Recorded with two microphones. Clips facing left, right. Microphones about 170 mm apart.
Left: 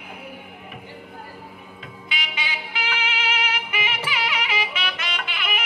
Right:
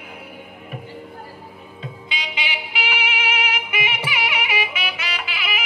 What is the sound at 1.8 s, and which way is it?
Music, 25° right (ahead or behind).